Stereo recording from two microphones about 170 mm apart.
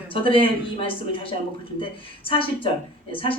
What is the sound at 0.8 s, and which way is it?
A woman's voice, 30° left (ahead or behind).